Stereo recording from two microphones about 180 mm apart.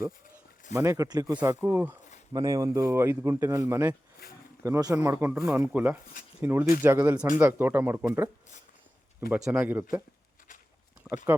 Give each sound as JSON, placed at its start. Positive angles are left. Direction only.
{"t": 0.7, "sound": "speech", "side_deg": -15}
{"t": 9.3, "sound": "speech", "side_deg": -5}